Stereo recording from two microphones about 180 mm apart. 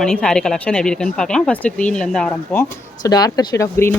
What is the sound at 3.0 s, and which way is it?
Speech, 20° left (ahead or behind).